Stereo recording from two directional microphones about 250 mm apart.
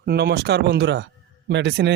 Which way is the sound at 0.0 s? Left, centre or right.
Right.